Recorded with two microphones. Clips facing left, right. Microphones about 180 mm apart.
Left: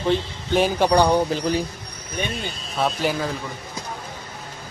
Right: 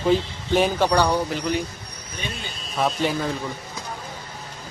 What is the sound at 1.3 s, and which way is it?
Speech, 35° left (ahead or behind).